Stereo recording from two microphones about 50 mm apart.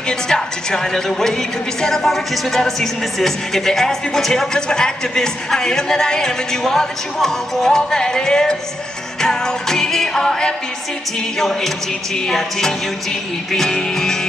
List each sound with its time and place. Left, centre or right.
0.1 s a woman's voice: centre